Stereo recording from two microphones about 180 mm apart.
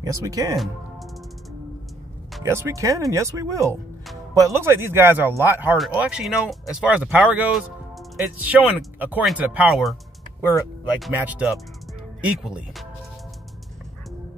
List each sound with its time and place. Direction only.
0.0 s speech: 20° right (ahead or behind)
2.4 s speech: 15° right (ahead or behind)
11.1 s speech: 10° right (ahead or behind)